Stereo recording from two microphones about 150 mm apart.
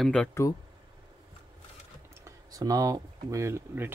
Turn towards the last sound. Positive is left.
turn(degrees=-15)  # may be behind; listen again after turning